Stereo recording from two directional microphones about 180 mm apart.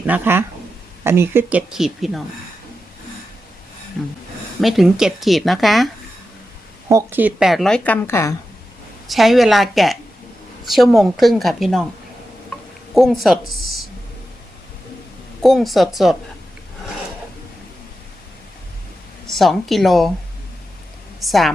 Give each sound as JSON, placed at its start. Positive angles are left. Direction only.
{"t": 0.0, "sound": "speech", "side_deg": -10}
{"t": 4.6, "sound": "speech", "side_deg": 0}
{"t": 6.8, "sound": "speech", "side_deg": -15}
{"t": 9.0, "sound": "speech", "side_deg": 0}
{"t": 12.9, "sound": "speech", "side_deg": 0}
{"t": 15.4, "sound": "speech", "side_deg": 0}
{"t": 19.3, "sound": "speech", "side_deg": 0}
{"t": 21.2, "sound": "speech", "side_deg": 0}